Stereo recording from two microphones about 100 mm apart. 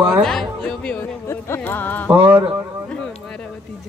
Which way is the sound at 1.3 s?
20° left (ahead or behind).